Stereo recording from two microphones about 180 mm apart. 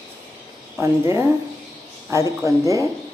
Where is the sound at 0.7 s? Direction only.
15° right (ahead or behind).